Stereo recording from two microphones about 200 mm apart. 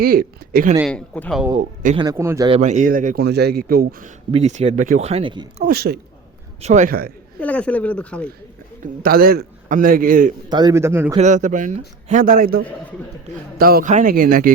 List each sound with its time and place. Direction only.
0.0 s a man's voice: 45° right (ahead or behind)
0.9 s speech: 5° left (ahead or behind)
1.5 s speech: 35° right (ahead or behind)
2.0 s speech: 15° right (ahead or behind)
2.5 s speech: 35° right (ahead or behind)
3.2 s a man's voice: 55° right (ahead or behind)
4.3 s speech: 35° right (ahead or behind)
5.6 s a man's voice: 50° right (ahead or behind)
6.6 s speech: 35° right (ahead or behind)
7.3 s speech: 5° left (ahead or behind)
8.8 s a man's voice: 45° right (ahead or behind)
10.5 s speech: 20° right (ahead or behind)
11.2 s a man's voice: 35° right (ahead or behind)